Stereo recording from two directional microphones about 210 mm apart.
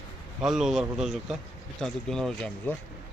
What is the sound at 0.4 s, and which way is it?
Speech, centre (ahead or behind).